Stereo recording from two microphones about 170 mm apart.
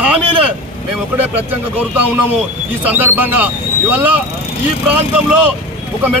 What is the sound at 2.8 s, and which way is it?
Speech, 10° right (ahead or behind).